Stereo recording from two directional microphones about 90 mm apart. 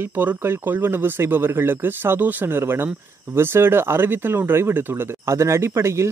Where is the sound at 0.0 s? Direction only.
25° right (ahead or behind).